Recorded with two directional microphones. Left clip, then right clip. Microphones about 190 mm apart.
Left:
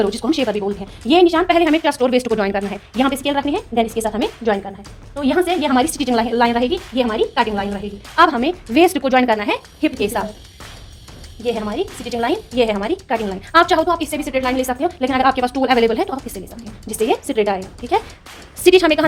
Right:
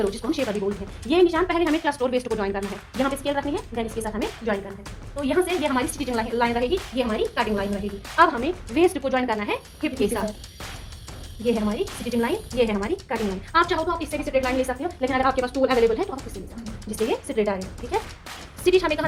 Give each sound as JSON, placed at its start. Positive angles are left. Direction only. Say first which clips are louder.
{"t": 0.0, "sound": "a woman's voice", "louder": "left 7 dB", "side_deg": 55}
{"t": 12.0, "sound": "a woman's voice", "louder": "left 5 dB", "side_deg": 55}